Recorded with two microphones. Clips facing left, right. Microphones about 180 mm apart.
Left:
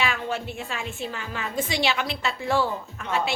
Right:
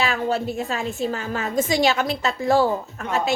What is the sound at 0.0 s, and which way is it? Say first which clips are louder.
A woman's voice: right 5 dB; 40° right (ahead or behind).